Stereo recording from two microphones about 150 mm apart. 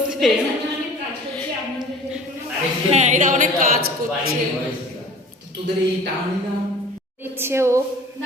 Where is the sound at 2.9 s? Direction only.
50° right (ahead or behind).